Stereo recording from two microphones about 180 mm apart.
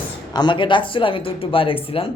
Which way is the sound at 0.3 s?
25° left (ahead or behind).